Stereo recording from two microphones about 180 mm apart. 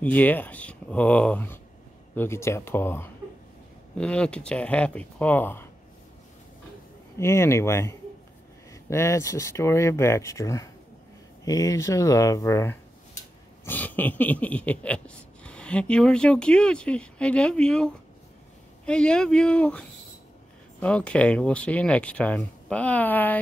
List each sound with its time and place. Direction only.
0.0 s speech: 10° left (ahead or behind)
7.2 s speech: 15° left (ahead or behind)
13.7 s a sound: 10° left (ahead or behind)
18.9 s speech: 5° left (ahead or behind)